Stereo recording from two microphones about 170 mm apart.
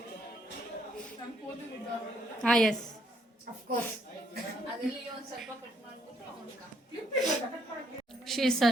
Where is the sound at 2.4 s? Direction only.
5° left (ahead or behind).